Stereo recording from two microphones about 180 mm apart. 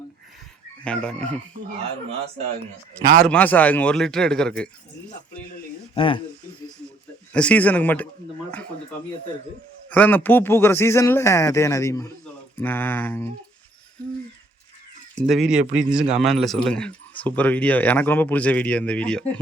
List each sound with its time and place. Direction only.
0.9 s a man's voice: 5° left (ahead or behind)
3.0 s a man's voice: 45° right (ahead or behind)
3.2 s a man's voice: 10° left (ahead or behind)
5.9 s speech: 30° left (ahead or behind)
7.3 s speech: 5° left (ahead or behind)
9.9 s speech: 10° left (ahead or behind)
15.3 s a man's voice: centre (ahead or behind)